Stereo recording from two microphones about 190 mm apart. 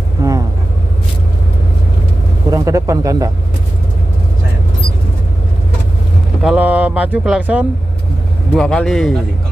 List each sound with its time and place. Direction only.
0.2 s vehicle: 15° right (ahead or behind)
2.5 s speech: 15° right (ahead or behind)
6.4 s speech: 5° right (ahead or behind)